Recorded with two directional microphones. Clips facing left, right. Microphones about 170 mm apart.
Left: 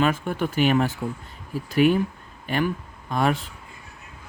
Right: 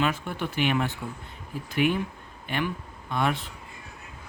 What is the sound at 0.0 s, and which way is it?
Speech, 50° left (ahead or behind).